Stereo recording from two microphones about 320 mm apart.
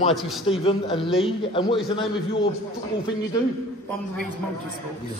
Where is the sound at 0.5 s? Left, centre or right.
Centre.